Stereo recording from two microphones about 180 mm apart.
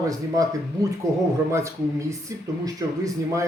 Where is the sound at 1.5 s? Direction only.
15° right (ahead or behind).